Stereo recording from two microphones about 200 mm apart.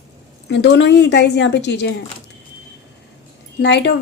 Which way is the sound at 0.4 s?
60° left (ahead or behind).